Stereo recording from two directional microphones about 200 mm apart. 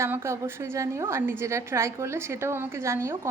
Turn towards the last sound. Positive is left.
turn(degrees=-15)  # may be behind; listen again after turning